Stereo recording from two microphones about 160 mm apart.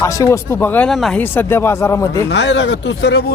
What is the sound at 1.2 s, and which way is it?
Speech, 10° left (ahead or behind).